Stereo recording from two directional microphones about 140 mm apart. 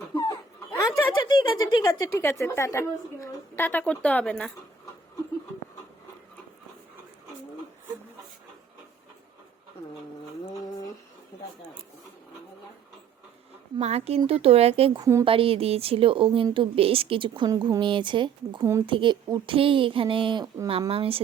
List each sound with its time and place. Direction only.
0.1 s a sound: 25° left (ahead or behind)
1.2 s speech: 30° left (ahead or behind); by 4.5 s 5° left (ahead or behind)
13.7 s a woman's voice: 50° right (ahead or behind)